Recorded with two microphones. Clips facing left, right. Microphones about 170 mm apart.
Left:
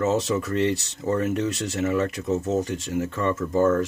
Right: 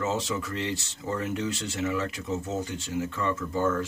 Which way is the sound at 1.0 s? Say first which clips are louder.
Left 6 dB; 45° left (ahead or behind).